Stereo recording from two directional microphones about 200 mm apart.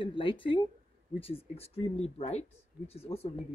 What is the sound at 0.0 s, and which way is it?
Speech, 25° left (ahead or behind).